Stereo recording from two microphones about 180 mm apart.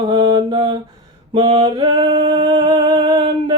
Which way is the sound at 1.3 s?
25° right (ahead or behind).